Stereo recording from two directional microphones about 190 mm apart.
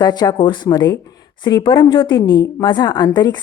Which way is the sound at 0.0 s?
20° left (ahead or behind).